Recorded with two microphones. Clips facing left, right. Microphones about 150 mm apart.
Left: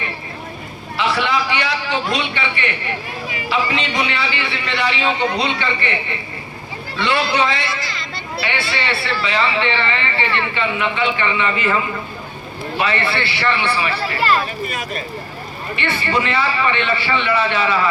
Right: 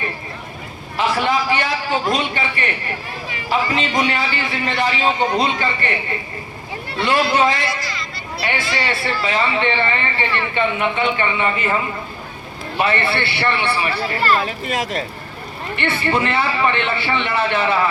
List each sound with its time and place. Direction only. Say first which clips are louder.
0.9 s a man's voice: right 1 dB; 45° right (ahead or behind)
12.8 s a man's voice: right 1 dB; 55° right (ahead or behind)
14.7 s speech: right 4 dB; 90° right
15.7 s a man's voice: right 1 dB; 55° right (ahead or behind)